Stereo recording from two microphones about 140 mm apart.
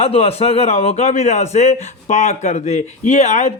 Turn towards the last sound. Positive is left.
turn(degrees=55)  # may be behind; listen again after turning